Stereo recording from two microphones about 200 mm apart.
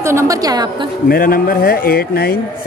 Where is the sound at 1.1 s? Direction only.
45° left (ahead or behind).